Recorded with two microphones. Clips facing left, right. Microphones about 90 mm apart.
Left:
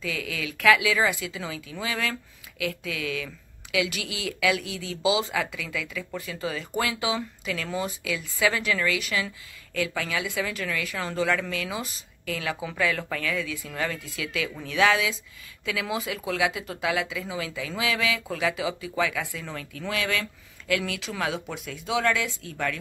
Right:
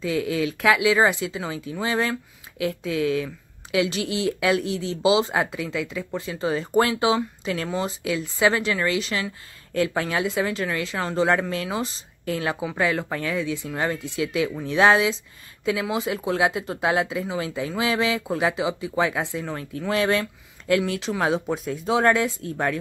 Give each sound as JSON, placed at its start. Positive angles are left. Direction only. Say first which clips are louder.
{"t": 0.0, "sound": "speech", "louder": "right 8 dB", "side_deg": -30}